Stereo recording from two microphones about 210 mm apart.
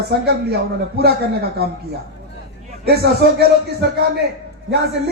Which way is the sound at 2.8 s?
50° right (ahead or behind).